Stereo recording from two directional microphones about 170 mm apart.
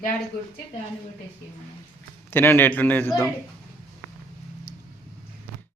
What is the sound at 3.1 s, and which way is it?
Speech, centre (ahead or behind).